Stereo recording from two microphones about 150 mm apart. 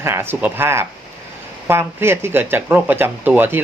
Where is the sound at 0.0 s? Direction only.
15° right (ahead or behind).